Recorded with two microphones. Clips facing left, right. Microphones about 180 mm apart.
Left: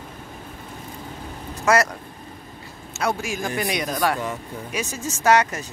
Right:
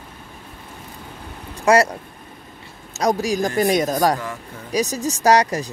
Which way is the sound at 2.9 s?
35° right (ahead or behind).